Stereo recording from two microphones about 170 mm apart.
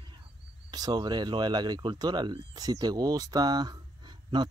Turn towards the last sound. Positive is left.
turn(degrees=-25)  # may be behind; listen again after turning